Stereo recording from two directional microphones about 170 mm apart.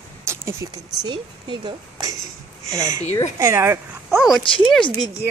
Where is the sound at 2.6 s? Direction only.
40° left (ahead or behind).